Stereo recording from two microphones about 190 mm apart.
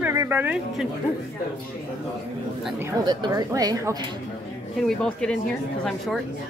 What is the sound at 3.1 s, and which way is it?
Speech, 20° right (ahead or behind).